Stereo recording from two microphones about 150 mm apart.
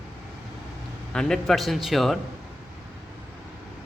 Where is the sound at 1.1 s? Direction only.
5° left (ahead or behind).